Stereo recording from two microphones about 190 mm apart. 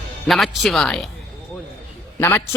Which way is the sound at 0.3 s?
Centre (ahead or behind).